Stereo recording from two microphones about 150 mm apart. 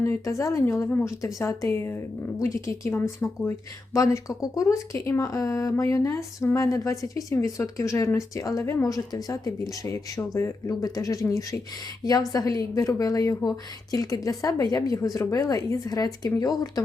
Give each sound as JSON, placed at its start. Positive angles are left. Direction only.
{"t": 0.0, "sound": "speech", "side_deg": 20}